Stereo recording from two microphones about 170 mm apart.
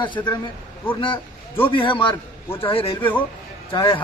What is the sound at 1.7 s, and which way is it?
A man's voice, 30° left (ahead or behind).